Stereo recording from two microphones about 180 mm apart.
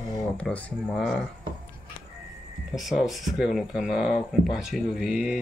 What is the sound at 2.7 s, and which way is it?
Speech, centre (ahead or behind).